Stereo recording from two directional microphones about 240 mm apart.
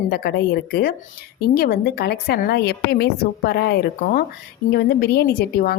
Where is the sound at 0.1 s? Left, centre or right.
Left.